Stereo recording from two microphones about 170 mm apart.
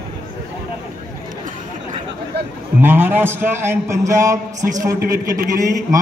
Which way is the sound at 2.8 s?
10° right (ahead or behind).